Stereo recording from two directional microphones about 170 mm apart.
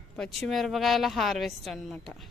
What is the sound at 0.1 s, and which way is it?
A woman's voice, centre (ahead or behind).